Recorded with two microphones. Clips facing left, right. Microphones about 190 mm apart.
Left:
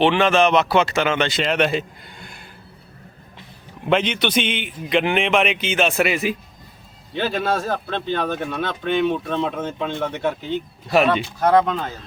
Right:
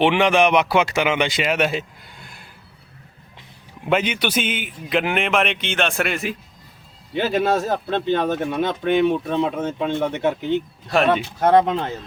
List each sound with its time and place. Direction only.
0.0 s a man's voice: 15° right (ahead or behind)
3.8 s a man's voice: 10° right (ahead or behind)
7.1 s a man's voice: 15° right (ahead or behind)
10.9 s a man's voice: centre (ahead or behind)
11.3 s speech: 25° right (ahead or behind)